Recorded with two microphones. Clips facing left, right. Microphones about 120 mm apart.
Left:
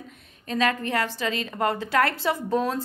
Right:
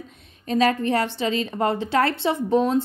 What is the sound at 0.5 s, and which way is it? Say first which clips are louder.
A woman's voice: right 5 dB; 30° right (ahead or behind).